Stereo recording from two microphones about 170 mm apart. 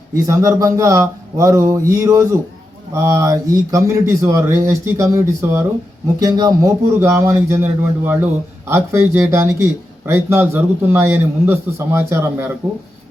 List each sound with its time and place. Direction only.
0.1 s a man's voice: 20° right (ahead or behind)